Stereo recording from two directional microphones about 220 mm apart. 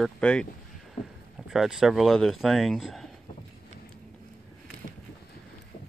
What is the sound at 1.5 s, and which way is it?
Speech, centre (ahead or behind).